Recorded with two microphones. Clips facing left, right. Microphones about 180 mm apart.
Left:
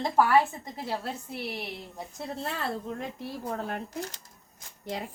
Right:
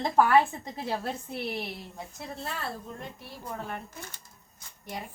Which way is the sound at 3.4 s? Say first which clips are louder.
Left 2 dB; 80° left.